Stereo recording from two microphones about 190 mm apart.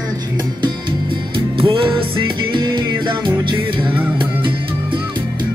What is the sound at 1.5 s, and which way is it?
Music, 30° right (ahead or behind).